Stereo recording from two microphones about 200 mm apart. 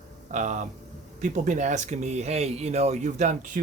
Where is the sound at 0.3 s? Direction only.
40° right (ahead or behind).